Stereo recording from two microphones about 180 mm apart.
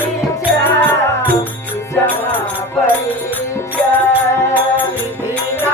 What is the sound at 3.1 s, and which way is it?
Music, 10° left (ahead or behind).